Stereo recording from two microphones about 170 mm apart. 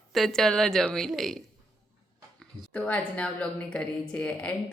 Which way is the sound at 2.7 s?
5° left (ahead or behind).